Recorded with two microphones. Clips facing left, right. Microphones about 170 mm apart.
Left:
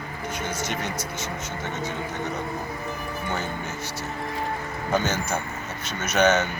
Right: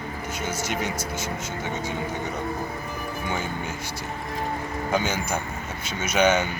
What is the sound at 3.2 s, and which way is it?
Speech, 10° right (ahead or behind).